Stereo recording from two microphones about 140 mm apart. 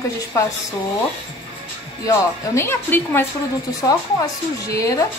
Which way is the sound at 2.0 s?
20° left (ahead or behind).